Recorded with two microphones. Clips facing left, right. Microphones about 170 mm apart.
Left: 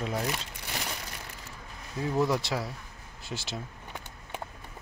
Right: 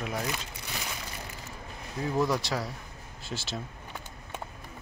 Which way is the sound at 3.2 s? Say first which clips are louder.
Even; 20° left (ahead or behind).